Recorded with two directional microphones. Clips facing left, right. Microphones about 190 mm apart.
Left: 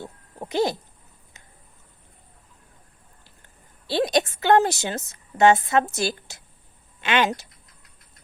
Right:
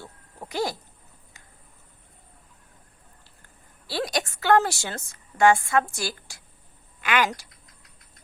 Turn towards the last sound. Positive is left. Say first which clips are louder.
# left 2 dB
turn(degrees=25)  # may be behind; listen again after turning